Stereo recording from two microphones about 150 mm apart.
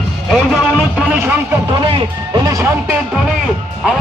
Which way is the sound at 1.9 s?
30° right (ahead or behind).